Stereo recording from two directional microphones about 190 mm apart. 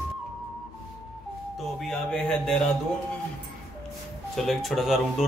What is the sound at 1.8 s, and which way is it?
Speech, 5° left (ahead or behind).